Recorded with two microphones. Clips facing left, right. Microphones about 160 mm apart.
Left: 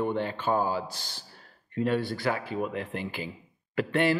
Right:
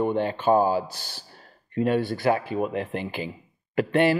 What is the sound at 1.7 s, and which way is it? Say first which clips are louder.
A man's voice: right 4 dB; 15° right (ahead or behind).